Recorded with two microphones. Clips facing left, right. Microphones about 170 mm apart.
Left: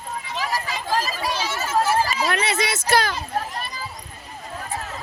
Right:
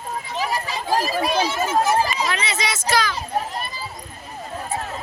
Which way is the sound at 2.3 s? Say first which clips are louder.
Left 2 dB; 60° left (ahead or behind).